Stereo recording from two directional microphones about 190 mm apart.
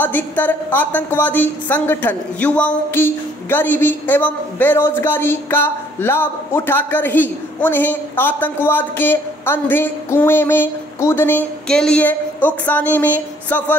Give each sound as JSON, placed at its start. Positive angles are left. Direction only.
{"t": 0.0, "sound": "a woman's voice", "side_deg": 10}